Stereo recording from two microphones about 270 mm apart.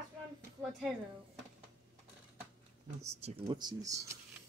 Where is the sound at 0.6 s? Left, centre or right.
Centre.